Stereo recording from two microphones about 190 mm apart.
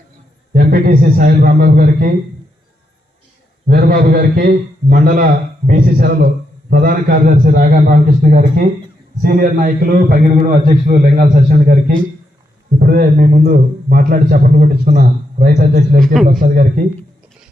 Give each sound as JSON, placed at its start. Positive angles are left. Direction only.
{"t": 0.5, "sound": "a man's voice", "side_deg": -50}
{"t": 3.7, "sound": "a man's voice", "side_deg": -50}